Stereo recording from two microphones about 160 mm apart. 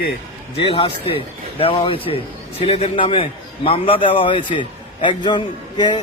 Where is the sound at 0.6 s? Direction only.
35° left (ahead or behind).